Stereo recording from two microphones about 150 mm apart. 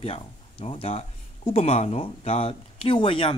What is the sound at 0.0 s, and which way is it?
Speech, 40° left (ahead or behind).